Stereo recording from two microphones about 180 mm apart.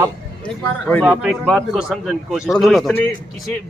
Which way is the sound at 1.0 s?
Centre (ahead or behind).